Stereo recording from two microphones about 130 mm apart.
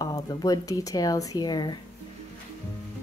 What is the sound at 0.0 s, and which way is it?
Speech, 30° left (ahead or behind).